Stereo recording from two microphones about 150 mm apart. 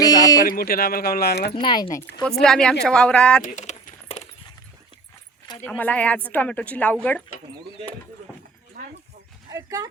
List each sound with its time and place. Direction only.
0.0 s a sound: 25° left (ahead or behind)
0.4 s speech: 75° left (ahead or behind); by 1.5 s 90° left
1.5 s speech: 30° left (ahead or behind)
1.9 s speech: 20° left (ahead or behind)
2.2 s speech: 5° left (ahead or behind)
3.4 s keys jangling: 50° left (ahead or behind)
5.6 s speech: 10° left (ahead or behind)
9.5 s speech: 20° right (ahead or behind)